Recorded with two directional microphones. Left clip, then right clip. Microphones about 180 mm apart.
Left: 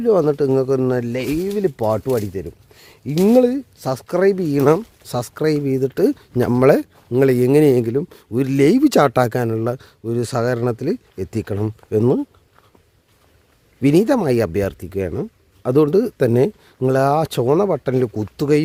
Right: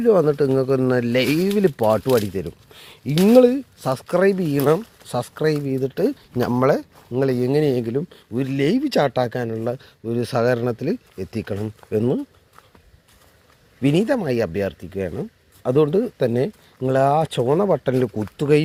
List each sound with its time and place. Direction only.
0.0 s speech: 20° left (ahead or behind)
1.1 s speech: 10° right (ahead or behind)
1.7 s speech: 10° left (ahead or behind)
2.0 s speech: centre (ahead or behind)
3.2 s speech: 20° left (ahead or behind)
13.8 s speech: 30° left (ahead or behind)
17.6 s speech: 20° left (ahead or behind)